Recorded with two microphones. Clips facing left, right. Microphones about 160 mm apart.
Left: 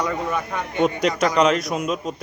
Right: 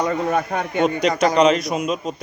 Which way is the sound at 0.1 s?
50° right (ahead or behind).